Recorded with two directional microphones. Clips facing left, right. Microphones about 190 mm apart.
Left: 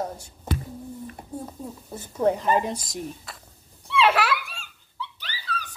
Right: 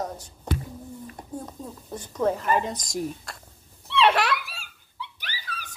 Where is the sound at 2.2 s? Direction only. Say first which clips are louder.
Left 2 dB; 20° left (ahead or behind).